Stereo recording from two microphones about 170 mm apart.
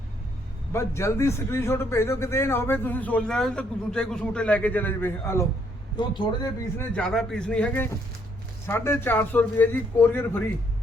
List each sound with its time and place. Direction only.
0.7 s a man's voice: 15° left (ahead or behind)
6.0 s a man's voice: 25° left (ahead or behind)
6.7 s a man's voice: 10° left (ahead or behind)